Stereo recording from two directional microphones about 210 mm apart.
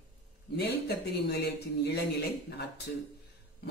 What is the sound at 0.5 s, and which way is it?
Speech, 50° left (ahead or behind).